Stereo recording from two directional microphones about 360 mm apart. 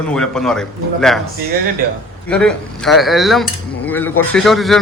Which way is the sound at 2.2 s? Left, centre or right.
Centre.